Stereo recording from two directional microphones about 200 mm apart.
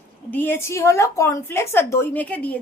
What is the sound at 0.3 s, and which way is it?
A woman's voice, 10° left (ahead or behind).